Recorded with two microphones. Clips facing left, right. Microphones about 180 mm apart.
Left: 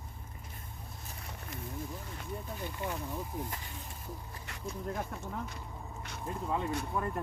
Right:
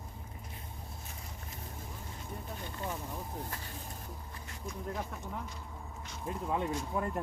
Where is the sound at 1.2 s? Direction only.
70° left (ahead or behind).